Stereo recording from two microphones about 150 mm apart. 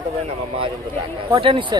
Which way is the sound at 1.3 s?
35° right (ahead or behind).